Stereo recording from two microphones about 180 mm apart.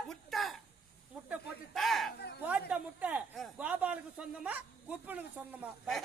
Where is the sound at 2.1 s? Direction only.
65° left (ahead or behind).